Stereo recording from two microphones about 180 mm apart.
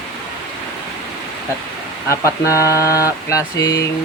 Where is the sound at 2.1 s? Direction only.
15° left (ahead or behind).